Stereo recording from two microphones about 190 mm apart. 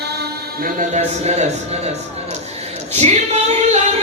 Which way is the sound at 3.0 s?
35° right (ahead or behind).